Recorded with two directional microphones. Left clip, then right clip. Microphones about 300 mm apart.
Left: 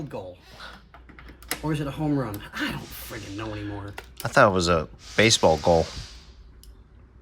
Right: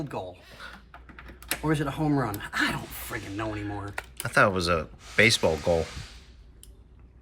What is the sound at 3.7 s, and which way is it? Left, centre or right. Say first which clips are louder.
Speech: right 2 dB; centre.